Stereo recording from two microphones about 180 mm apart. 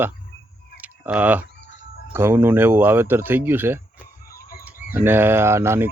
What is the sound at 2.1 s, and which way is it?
Speech, 10° right (ahead or behind).